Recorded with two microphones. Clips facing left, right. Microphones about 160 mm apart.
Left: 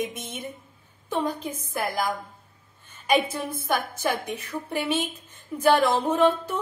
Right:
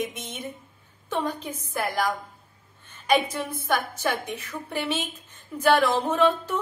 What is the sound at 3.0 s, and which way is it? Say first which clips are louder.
A woman's voice: even; 10° left (ahead or behind).